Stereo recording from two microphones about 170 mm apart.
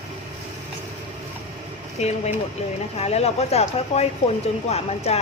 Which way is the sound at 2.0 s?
40° left (ahead or behind).